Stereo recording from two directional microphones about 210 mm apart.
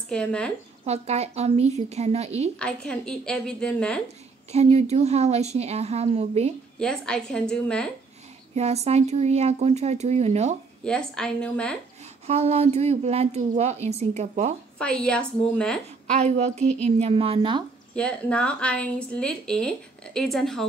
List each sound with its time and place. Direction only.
0.1 s a woman's voice: 5° left (ahead or behind)
0.8 s speech: 30° right (ahead or behind)
2.6 s a woman's voice: 5° left (ahead or behind)
4.5 s speech: 30° right (ahead or behind)
6.8 s a woman's voice: 5° left (ahead or behind)
8.5 s speech: 30° right (ahead or behind)
10.8 s a woman's voice: 5° left (ahead or behind)
12.3 s a woman's voice: 30° right (ahead or behind)
14.8 s a woman's voice: 5° left (ahead or behind)
16.2 s a woman's voice: 30° right (ahead or behind)
17.9 s a woman's voice: 5° left (ahead or behind)